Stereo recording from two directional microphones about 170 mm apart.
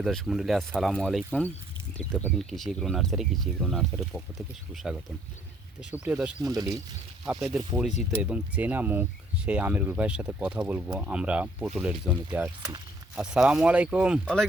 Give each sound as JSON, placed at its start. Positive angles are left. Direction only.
{"t": 0.0, "sound": "speech", "side_deg": 0}
{"t": 6.4, "sound": "speech", "side_deg": -20}
{"t": 7.3, "sound": "speech", "side_deg": 0}